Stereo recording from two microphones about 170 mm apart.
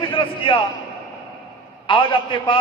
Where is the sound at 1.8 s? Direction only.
30° left (ahead or behind).